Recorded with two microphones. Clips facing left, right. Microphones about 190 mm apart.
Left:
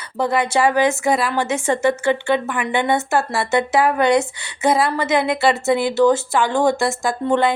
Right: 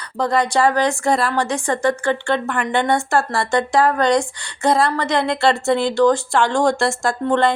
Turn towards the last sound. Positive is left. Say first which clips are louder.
# even
turn(degrees=5)  # may be behind; listen again after turning